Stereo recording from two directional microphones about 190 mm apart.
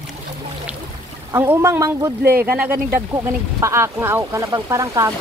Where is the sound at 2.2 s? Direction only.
55° right (ahead or behind).